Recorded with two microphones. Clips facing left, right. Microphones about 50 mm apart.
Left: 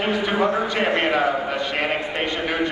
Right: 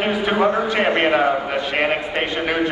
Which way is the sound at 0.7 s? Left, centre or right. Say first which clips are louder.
Right 3 dB; centre.